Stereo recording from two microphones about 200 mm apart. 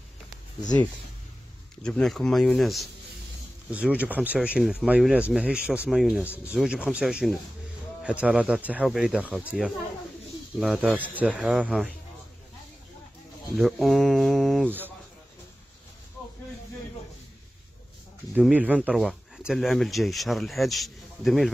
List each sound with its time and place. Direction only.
0.6 s speech: 20° left (ahead or behind)
1.8 s speech: 5° left (ahead or behind)
13.6 s speech: centre (ahead or behind)
18.3 s speech: 5° right (ahead or behind)